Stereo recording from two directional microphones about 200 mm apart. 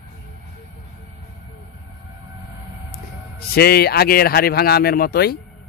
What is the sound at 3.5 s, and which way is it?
Speech, 50° left (ahead or behind).